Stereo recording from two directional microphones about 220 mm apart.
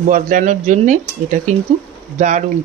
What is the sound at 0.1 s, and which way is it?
Speech, 35° right (ahead or behind).